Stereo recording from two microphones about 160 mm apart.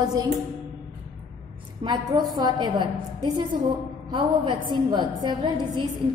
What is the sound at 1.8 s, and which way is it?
A woman's voice, 25° right (ahead or behind).